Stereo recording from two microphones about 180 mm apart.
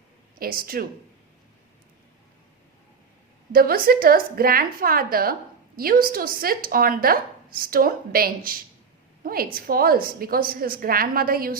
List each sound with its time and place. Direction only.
0.3 s a woman's voice: 55° right (ahead or behind)
3.5 s a woman's voice: 55° right (ahead or behind)